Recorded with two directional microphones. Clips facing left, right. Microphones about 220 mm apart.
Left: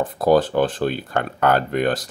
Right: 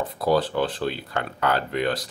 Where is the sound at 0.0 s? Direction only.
45° left (ahead or behind).